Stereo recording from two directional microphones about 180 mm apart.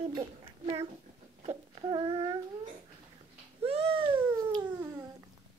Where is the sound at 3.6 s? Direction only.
30° right (ahead or behind).